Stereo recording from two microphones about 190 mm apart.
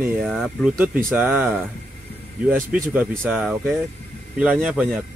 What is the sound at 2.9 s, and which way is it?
Speech, 10° right (ahead or behind).